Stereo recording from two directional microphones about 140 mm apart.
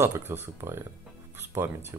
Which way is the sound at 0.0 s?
15° right (ahead or behind).